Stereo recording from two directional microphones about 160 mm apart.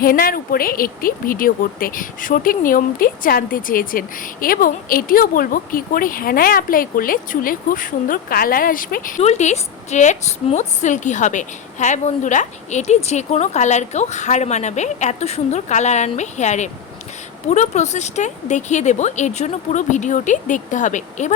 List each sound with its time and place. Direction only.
0.0 s a woman's voice: 65° left (ahead or behind)